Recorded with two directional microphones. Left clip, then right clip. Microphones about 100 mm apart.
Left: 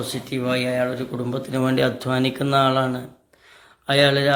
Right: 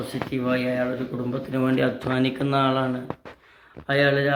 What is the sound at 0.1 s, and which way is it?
Speech, 25° left (ahead or behind).